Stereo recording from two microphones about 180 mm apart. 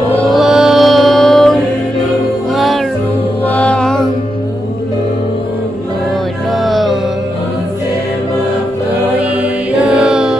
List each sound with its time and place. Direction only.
0.3 s music: centre (ahead or behind)
6.6 s music: centre (ahead or behind)
9.4 s mantra: 5° right (ahead or behind)